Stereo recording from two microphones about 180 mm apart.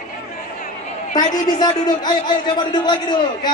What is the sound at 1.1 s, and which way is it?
A man's voice, 25° left (ahead or behind).